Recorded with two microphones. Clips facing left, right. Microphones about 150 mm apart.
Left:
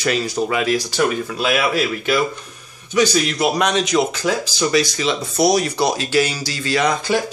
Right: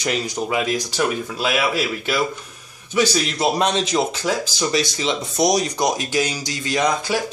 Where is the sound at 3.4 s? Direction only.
30° right (ahead or behind).